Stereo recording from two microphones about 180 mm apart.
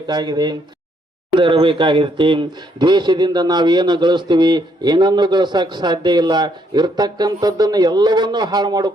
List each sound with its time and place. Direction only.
0.1 s speech: 25° right (ahead or behind)